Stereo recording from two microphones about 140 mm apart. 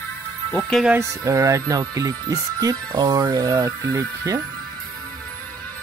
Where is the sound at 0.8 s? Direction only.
20° right (ahead or behind).